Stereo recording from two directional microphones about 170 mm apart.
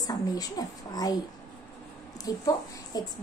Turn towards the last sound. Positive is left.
turn(degrees=25)  # may be behind; listen again after turning